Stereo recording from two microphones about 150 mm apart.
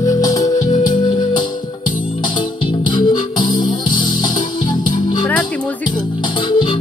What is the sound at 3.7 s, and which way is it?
Music, 60° left (ahead or behind).